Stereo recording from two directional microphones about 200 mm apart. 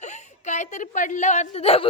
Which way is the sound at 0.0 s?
35° left (ahead or behind).